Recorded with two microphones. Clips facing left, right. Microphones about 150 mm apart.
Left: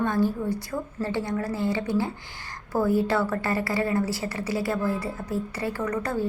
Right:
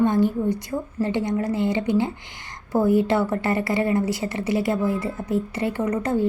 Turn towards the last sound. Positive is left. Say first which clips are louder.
# right 5 dB
turn(degrees=-20)  # may be behind; listen again after turning